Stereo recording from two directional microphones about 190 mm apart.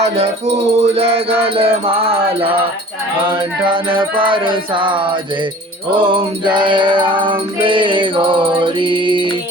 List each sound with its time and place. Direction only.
0.2 s music: 35° right (ahead or behind)
4.2 s music: 25° right (ahead or behind)